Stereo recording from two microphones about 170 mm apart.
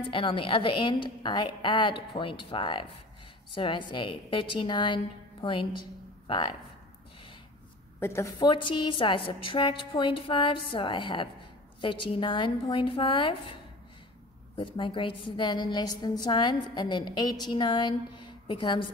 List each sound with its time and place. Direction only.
0.0 s a woman's voice: 30° left (ahead or behind)
8.0 s a woman's voice: 15° left (ahead or behind)
8.5 s a woman's voice: 30° left (ahead or behind)
14.5 s a woman's voice: 30° left (ahead or behind)